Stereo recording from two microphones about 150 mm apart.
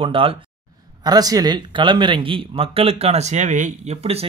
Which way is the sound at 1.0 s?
25° right (ahead or behind).